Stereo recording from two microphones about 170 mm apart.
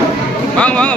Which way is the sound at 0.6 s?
10° left (ahead or behind).